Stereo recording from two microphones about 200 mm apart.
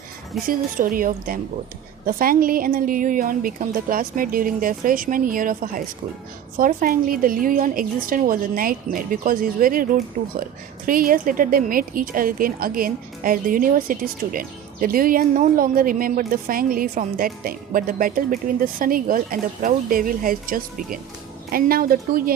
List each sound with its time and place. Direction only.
0.4 s a woman's voice: 45° right (ahead or behind)